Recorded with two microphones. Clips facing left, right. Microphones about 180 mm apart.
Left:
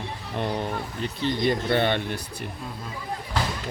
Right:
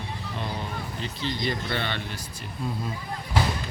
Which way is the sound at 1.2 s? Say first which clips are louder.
Left 6 dB; 50° left (ahead or behind).